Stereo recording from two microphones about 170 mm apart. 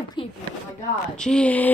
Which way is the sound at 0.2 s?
30° left (ahead or behind).